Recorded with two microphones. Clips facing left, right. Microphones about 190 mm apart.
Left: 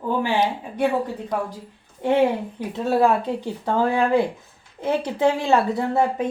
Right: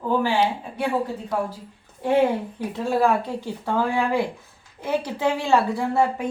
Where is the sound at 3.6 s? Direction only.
20° left (ahead or behind).